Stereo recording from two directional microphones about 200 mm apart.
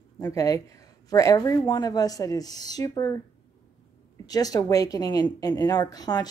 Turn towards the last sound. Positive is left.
turn(degrees=20)  # may be behind; listen again after turning